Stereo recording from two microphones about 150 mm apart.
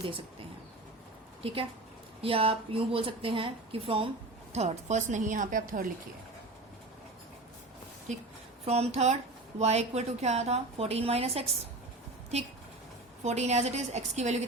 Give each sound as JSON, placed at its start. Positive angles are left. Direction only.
{"t": 1.4, "sound": "a woman's voice", "side_deg": -40}
{"t": 8.6, "sound": "a woman's voice", "side_deg": -45}
{"t": 13.2, "sound": "a woman's voice", "side_deg": -50}